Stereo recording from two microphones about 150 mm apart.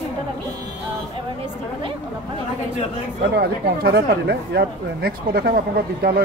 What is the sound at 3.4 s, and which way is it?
Speech, 90° right.